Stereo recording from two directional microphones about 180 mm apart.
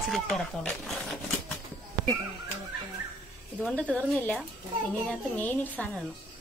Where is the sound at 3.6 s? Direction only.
5° left (ahead or behind).